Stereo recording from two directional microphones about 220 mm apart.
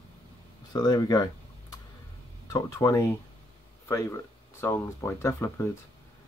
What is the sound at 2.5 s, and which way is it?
Speech, 15° left (ahead or behind).